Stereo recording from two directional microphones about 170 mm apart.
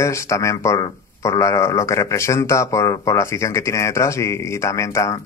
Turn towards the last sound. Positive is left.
turn(degrees=20)  # may be behind; listen again after turning